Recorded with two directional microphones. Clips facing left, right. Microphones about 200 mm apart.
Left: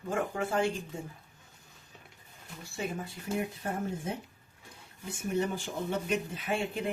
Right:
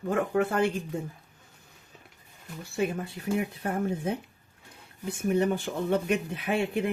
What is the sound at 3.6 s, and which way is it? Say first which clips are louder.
Speech: right 5 dB; 60° right (ahead or behind).